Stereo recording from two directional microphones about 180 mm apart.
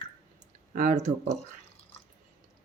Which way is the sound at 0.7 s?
45° right (ahead or behind).